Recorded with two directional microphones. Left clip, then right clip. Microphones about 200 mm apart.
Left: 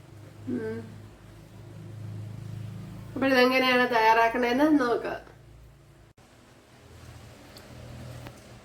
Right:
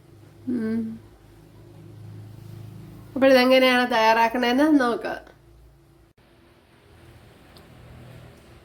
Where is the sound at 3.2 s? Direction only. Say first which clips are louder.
Right 6 dB; 55° right (ahead or behind).